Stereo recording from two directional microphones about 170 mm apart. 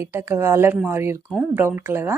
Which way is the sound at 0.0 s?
15° right (ahead or behind).